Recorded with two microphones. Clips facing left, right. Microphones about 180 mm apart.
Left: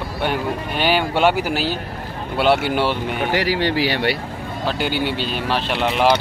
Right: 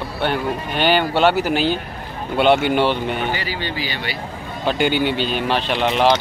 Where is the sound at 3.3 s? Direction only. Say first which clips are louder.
Left 7 dB; 80° left; by 4.2 s 65° left (ahead or behind).